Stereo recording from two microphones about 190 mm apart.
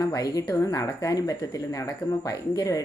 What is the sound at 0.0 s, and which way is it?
Speech, 20° left (ahead or behind).